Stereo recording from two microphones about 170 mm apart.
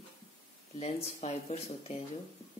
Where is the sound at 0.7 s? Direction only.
40° left (ahead or behind).